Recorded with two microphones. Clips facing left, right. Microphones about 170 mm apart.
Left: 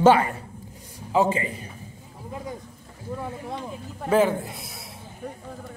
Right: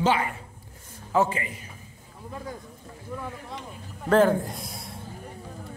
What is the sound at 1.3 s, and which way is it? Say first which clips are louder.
Speech: left 5 dB; 30° left (ahead or behind).